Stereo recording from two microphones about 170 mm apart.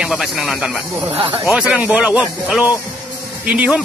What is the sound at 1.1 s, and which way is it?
Speech, 30° right (ahead or behind).